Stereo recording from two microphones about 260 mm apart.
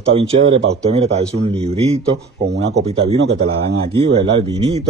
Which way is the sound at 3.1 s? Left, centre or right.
Right.